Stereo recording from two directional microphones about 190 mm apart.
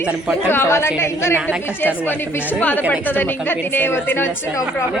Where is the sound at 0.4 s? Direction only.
10° left (ahead or behind).